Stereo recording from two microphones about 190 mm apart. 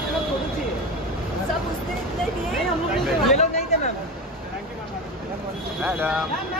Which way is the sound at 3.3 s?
35° left (ahead or behind).